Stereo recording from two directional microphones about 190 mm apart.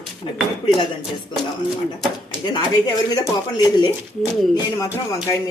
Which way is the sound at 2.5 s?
20° left (ahead or behind).